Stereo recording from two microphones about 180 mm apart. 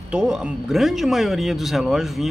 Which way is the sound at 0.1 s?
5° right (ahead or behind).